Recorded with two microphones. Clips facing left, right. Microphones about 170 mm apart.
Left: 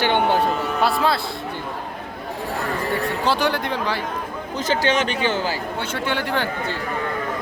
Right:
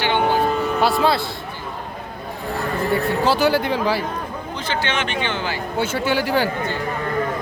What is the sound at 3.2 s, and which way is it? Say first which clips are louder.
Speech: right 3 dB; 5° right (ahead or behind).